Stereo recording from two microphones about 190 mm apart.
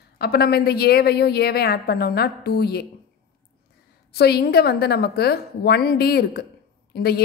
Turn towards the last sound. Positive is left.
turn(degrees=55)  # may be behind; listen again after turning